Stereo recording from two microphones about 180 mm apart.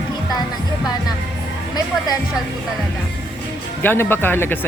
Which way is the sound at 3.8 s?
10° left (ahead or behind).